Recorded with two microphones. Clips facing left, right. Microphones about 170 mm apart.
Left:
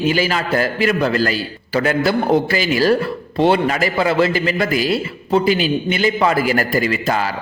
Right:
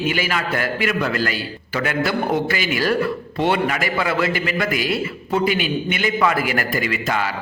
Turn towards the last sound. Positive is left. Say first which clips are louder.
# left 4 dB
turn(degrees=35)  # may be behind; listen again after turning